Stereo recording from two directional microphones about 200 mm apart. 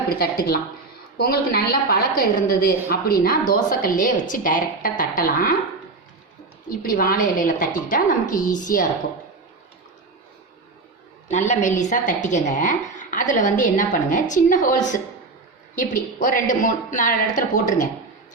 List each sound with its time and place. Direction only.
0.1 s a woman's voice: 50° left (ahead or behind)
6.7 s a woman's voice: 45° left (ahead or behind)
11.3 s a woman's voice: 35° left (ahead or behind)